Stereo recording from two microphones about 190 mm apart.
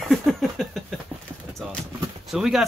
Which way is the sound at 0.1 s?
Centre (ahead or behind).